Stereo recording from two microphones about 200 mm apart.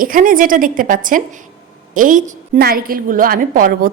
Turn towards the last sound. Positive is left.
turn(degrees=-45)  # may be behind; listen again after turning